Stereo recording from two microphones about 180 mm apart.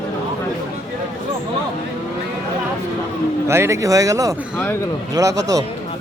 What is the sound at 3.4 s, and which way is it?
Speech, 15° right (ahead or behind).